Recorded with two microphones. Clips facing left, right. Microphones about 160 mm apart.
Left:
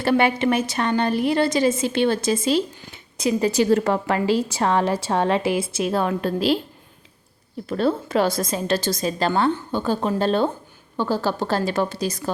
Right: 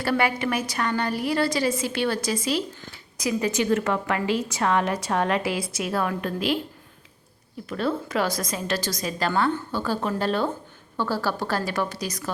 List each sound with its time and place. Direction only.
0.0 s a woman's voice: 25° left (ahead or behind)
7.7 s a woman's voice: 30° left (ahead or behind)